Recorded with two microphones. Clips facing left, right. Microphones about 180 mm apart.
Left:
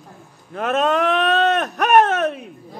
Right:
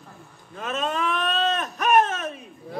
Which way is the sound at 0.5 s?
70° left (ahead or behind).